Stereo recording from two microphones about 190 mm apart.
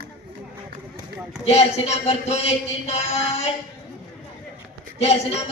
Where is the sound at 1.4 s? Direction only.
35° left (ahead or behind).